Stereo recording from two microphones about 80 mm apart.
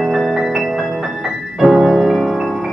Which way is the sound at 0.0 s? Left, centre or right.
Centre.